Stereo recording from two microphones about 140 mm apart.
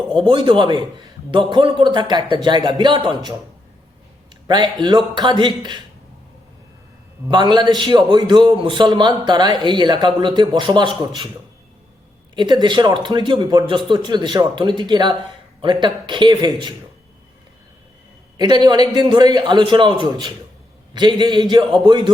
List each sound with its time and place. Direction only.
0.3 s a man's voice: 35° right (ahead or behind)
4.4 s a man's voice: 30° right (ahead or behind)
7.3 s a man's voice: 30° right (ahead or behind)
12.4 s a man's voice: 30° right (ahead or behind)
18.3 s a man's voice: 30° right (ahead or behind)